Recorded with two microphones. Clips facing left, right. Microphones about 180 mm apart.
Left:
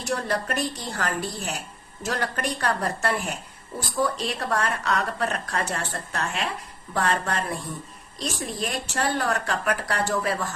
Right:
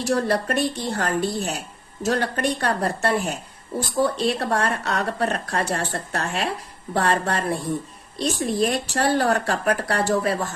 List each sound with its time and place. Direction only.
0.1 s a woman's voice: 30° right (ahead or behind)